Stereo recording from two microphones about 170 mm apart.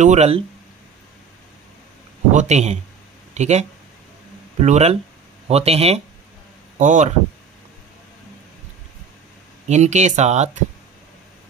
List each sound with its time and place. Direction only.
0.0 s speech: 40° right (ahead or behind)
2.3 s speech: 40° right (ahead or behind)
9.7 s speech: 45° right (ahead or behind)